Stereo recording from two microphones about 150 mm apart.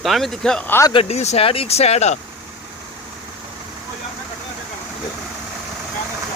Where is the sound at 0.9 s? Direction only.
45° left (ahead or behind).